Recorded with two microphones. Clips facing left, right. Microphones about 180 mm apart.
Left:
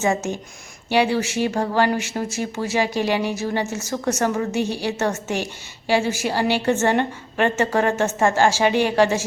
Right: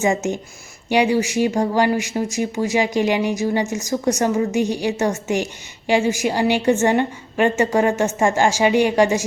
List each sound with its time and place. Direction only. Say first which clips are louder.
0.0 s a woman's voice: right 2 dB; 15° right (ahead or behind)